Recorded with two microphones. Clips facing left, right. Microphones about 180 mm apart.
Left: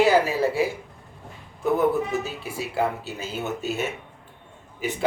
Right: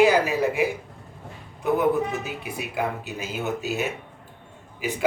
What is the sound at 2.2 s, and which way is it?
Speech, 15° right (ahead or behind).